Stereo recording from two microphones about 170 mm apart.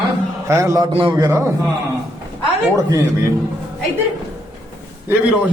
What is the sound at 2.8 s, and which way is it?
Speech, 20° right (ahead or behind).